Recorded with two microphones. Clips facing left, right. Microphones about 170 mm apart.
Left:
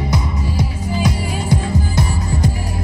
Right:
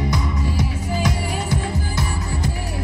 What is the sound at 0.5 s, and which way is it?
Music, 15° left (ahead or behind).